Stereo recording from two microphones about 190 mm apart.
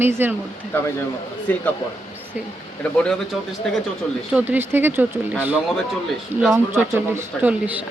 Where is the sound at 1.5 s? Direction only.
10° left (ahead or behind).